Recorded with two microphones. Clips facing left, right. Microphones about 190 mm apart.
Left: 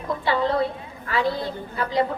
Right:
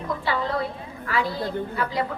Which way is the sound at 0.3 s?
25° left (ahead or behind).